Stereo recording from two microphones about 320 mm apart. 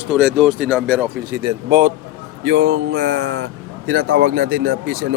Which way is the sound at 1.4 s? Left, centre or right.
Right.